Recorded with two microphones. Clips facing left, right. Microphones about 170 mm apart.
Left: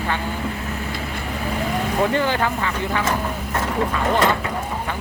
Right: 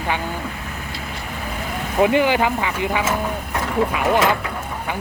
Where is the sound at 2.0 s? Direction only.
15° right (ahead or behind).